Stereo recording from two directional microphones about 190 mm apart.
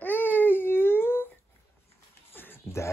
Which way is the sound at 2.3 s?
10° left (ahead or behind).